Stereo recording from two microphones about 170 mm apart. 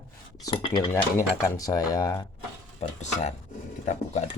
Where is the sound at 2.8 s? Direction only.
40° left (ahead or behind).